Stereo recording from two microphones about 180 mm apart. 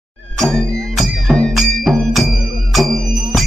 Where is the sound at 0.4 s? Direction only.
Centre (ahead or behind).